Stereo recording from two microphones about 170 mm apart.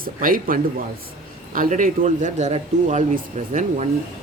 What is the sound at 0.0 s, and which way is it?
Speech, 55° right (ahead or behind).